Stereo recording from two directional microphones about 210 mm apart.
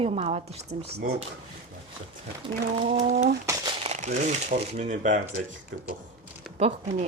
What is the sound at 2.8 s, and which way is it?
Speech, 35° right (ahead or behind).